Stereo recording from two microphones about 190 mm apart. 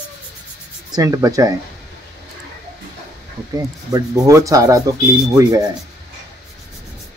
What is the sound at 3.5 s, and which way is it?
A man's voice, 15° right (ahead or behind).